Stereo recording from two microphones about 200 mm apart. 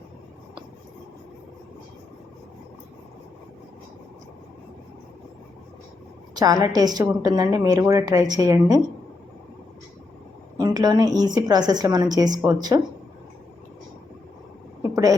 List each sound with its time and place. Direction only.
6.3 s a woman's voice: 20° right (ahead or behind)
10.6 s a woman's voice: 20° right (ahead or behind)